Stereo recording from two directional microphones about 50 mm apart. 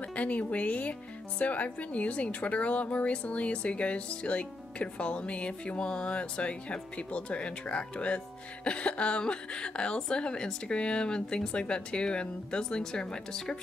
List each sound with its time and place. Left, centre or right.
0.1 s a woman's voice: left